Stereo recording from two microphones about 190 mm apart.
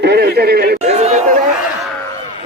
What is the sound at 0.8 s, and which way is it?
Speech, 35° right (ahead or behind).